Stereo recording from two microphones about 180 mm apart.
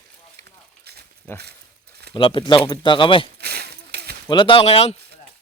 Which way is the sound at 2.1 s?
25° left (ahead or behind).